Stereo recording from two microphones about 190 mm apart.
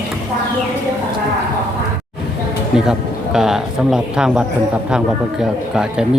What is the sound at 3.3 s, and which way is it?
Speech, centre (ahead or behind).